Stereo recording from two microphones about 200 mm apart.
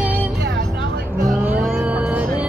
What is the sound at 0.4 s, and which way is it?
Music, 50° right (ahead or behind).